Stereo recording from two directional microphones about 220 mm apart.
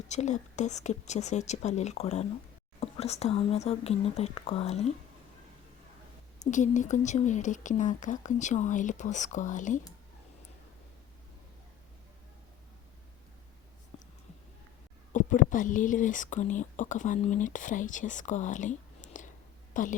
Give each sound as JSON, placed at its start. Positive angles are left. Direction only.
{"t": 0.1, "sound": "speech", "side_deg": 30}
{"t": 6.4, "sound": "speech", "side_deg": 35}
{"t": 13.9, "sound": "whispering", "side_deg": 25}
{"t": 15.1, "sound": "speech", "side_deg": 35}